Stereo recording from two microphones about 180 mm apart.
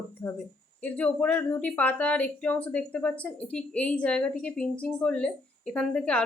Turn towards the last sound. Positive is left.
turn(degrees=5)  # may be behind; listen again after turning